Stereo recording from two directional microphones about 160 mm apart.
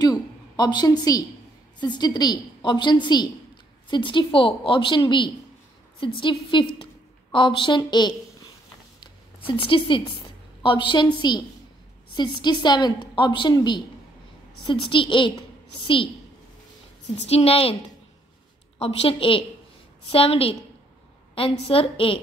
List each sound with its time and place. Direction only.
0.0 s a sound: 25° left (ahead or behind)
1.8 s a woman's voice: 25° left (ahead or behind)
9.0 s a sound: 30° left (ahead or behind)
10.6 s a woman's voice: 30° left (ahead or behind)
17.3 s a woman's voice: 40° left (ahead or behind)
18.8 s a woman's voice: 35° left (ahead or behind)